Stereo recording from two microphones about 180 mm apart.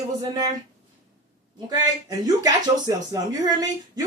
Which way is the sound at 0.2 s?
20° right (ahead or behind).